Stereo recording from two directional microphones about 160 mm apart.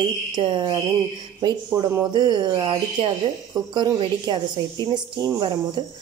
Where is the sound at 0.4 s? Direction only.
30° right (ahead or behind).